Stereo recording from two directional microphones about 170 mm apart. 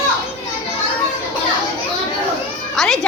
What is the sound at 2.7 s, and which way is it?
Speech, 5° left (ahead or behind).